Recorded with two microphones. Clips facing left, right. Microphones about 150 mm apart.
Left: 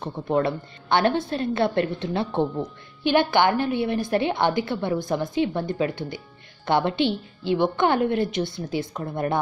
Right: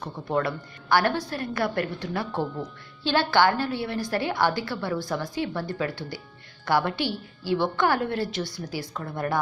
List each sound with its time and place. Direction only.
0.0 s a woman's voice: 25° left (ahead or behind)